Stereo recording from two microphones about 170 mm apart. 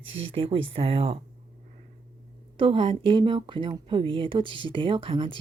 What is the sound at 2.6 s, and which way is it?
Speech, 30° right (ahead or behind).